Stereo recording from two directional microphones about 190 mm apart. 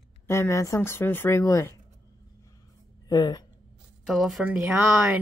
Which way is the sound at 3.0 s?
20° left (ahead or behind).